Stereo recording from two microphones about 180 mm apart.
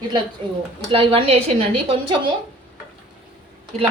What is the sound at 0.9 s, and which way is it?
A woman's voice, 30° right (ahead or behind).